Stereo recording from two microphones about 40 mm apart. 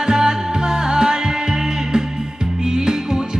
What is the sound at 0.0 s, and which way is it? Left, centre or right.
Music, centre.